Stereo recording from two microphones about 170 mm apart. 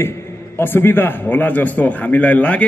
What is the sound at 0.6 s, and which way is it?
A man's voice, 10° left (ahead or behind).